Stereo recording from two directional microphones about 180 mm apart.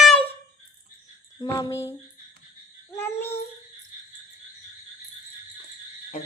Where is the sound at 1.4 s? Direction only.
20° left (ahead or behind).